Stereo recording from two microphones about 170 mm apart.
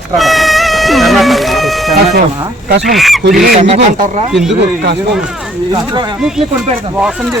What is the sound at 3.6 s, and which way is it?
Speech, 40° right (ahead or behind).